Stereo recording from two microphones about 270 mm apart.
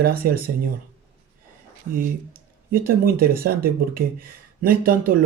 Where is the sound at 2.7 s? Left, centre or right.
Right.